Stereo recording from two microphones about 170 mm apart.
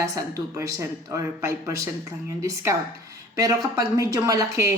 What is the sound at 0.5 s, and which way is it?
A woman's voice, 20° right (ahead or behind).